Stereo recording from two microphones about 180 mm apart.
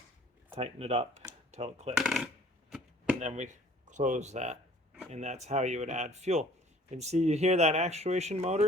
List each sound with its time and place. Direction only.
0.5 s speech: 35° right (ahead or behind)
2.0 s a sound: 5° right (ahead or behind)
3.2 s speech: 40° right (ahead or behind)